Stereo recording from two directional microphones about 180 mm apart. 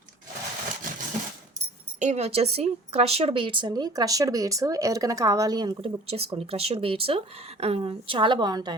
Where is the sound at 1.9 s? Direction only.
40° right (ahead or behind).